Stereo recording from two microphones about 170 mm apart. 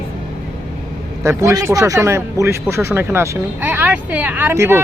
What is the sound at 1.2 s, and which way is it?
Speech, 15° right (ahead or behind).